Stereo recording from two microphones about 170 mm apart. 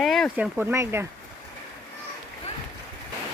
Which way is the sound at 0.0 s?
Centre (ahead or behind).